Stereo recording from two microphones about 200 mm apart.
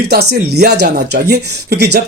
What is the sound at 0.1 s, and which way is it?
Speech, 55° right (ahead or behind).